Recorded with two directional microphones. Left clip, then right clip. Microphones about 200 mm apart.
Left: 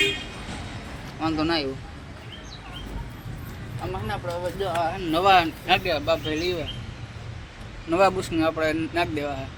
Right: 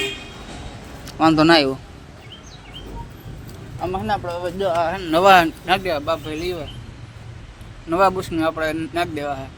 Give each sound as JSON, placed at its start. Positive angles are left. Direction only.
{"t": 1.2, "sound": "speech", "side_deg": -50}
{"t": 3.9, "sound": "speech", "side_deg": -55}
{"t": 5.6, "sound": "speech", "side_deg": -25}
{"t": 6.1, "sound": "speech", "side_deg": -5}
{"t": 7.9, "sound": "speech", "side_deg": -10}